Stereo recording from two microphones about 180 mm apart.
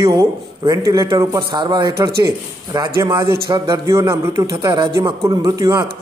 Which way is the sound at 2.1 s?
60° right (ahead or behind).